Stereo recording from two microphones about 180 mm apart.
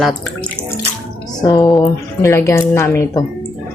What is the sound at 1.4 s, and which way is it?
A woman's voice, 20° left (ahead or behind).